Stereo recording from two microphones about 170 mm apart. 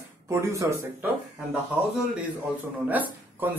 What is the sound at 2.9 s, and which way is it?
Speech, 10° right (ahead or behind).